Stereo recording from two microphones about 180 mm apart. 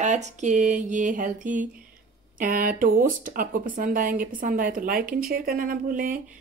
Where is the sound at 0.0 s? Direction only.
40° right (ahead or behind).